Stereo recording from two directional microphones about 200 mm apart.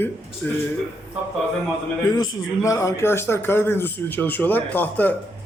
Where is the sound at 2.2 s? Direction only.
15° left (ahead or behind).